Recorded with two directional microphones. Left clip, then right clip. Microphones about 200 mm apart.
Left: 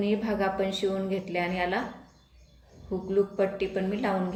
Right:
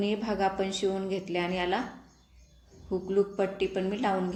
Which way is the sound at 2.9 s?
40° right (ahead or behind).